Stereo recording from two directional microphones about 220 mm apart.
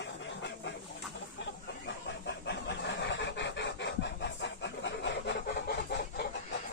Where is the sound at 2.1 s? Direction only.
50° left (ahead or behind).